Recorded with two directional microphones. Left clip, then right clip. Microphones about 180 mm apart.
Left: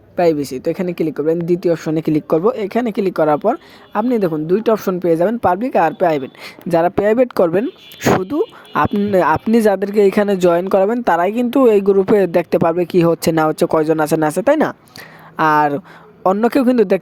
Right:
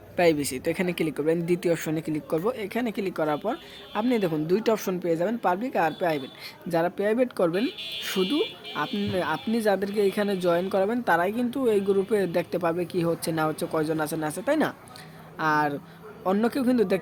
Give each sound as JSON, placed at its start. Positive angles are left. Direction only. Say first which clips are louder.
{"t": 0.2, "sound": "speech", "louder": "left 7 dB", "side_deg": 20}
{"t": 1.9, "sound": "a woman's voice", "louder": "left 12 dB", "side_deg": 45}
{"t": 4.8, "sound": "a woman's voice", "louder": "left 11 dB", "side_deg": 35}